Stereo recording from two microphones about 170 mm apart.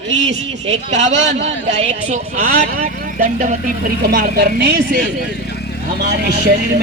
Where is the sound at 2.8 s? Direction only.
55° right (ahead or behind).